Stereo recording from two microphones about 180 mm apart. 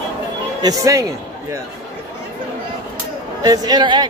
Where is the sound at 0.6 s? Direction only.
20° right (ahead or behind).